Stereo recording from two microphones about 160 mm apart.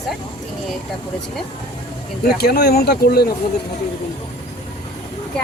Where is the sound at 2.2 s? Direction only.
75° left (ahead or behind).